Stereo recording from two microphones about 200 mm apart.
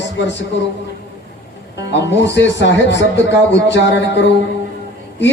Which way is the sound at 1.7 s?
60° left (ahead or behind).